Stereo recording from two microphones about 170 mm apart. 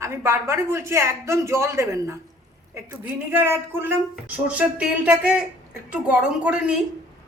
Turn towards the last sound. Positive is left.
turn(degrees=-5)  # may be behind; listen again after turning